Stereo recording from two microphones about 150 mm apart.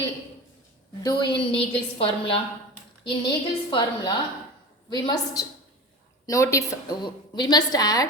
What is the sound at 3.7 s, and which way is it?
A woman's voice, 30° left (ahead or behind).